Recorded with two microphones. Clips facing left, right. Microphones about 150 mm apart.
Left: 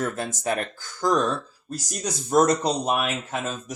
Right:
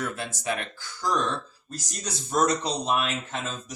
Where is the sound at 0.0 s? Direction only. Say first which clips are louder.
Left 4 dB; 45° left (ahead or behind).